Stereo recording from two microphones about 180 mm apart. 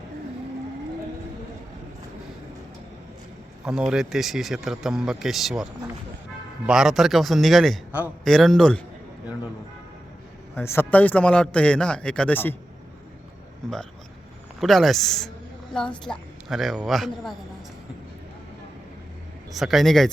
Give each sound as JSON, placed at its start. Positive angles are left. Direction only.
{"t": 3.7, "sound": "speech", "side_deg": -5}
{"t": 6.7, "sound": "speech", "side_deg": -5}
{"t": 10.5, "sound": "a man's voice", "side_deg": 15}
{"t": 14.6, "sound": "speech", "side_deg": 0}
{"t": 16.5, "sound": "speech", "side_deg": 0}
{"t": 19.5, "sound": "speech", "side_deg": 0}